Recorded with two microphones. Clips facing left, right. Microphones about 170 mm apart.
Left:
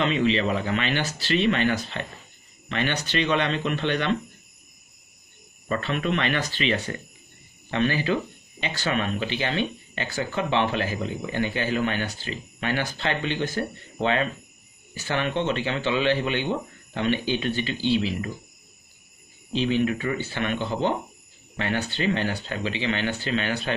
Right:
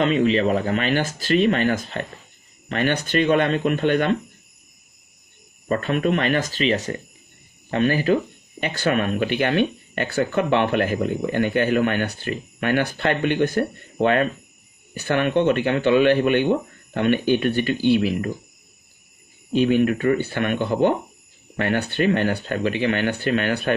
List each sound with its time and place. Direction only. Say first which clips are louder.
0.0 s speech: right 4 dB; 45° right (ahead or behind)
5.7 s speech: right 5 dB; 45° right (ahead or behind)
19.5 s speech: right 5 dB; 50° right (ahead or behind)